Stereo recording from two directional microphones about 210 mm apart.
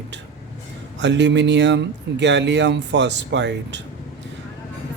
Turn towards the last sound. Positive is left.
turn(degrees=-55)  # may be behind; listen again after turning